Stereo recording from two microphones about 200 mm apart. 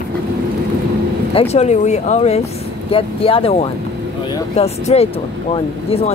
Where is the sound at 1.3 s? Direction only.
30° left (ahead or behind).